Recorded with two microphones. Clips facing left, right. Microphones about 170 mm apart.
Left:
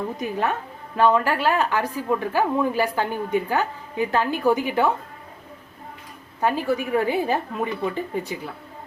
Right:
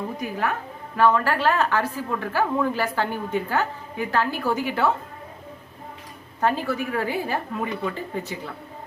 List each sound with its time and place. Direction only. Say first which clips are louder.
0.2 s a woman's voice: left 2 dB; 20° left (ahead or behind)
6.4 s a woman's voice: left 1 dB; 15° left (ahead or behind)